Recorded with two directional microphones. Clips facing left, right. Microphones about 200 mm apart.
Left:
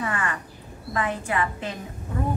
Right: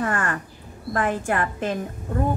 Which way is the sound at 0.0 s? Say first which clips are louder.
Right 4 dB; 50° right (ahead or behind).